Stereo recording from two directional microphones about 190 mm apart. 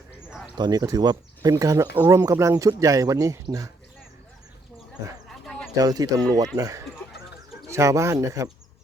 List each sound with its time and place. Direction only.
0.5 s speech: 20° right (ahead or behind)
5.5 s horse: 5° left (ahead or behind)
5.7 s speech: 20° right (ahead or behind)